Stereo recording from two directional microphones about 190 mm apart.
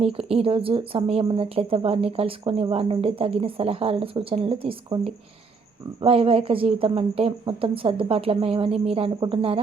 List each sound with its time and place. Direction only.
0.0 s speech: 30° right (ahead or behind)